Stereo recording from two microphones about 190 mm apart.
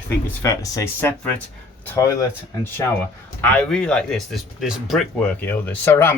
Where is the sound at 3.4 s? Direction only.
5° left (ahead or behind).